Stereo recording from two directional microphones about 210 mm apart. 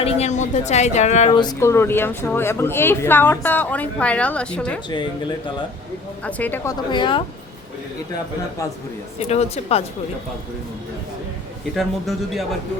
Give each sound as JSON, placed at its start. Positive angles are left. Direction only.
{"t": 0.0, "sound": "speech", "side_deg": 30}
{"t": 6.2, "sound": "speech", "side_deg": 5}
{"t": 6.9, "sound": "speech", "side_deg": 25}
{"t": 9.2, "sound": "speech", "side_deg": 30}
{"t": 11.8, "sound": "a man's voice", "side_deg": 0}